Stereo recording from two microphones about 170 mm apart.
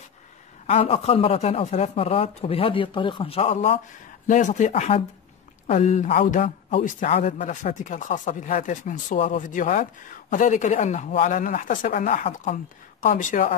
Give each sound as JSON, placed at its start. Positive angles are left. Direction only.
{"t": 0.7, "sound": "speech", "side_deg": 35}
{"t": 4.3, "sound": "speech", "side_deg": 45}